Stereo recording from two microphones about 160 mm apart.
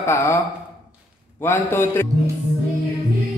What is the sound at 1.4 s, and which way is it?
Speech, 15° left (ahead or behind).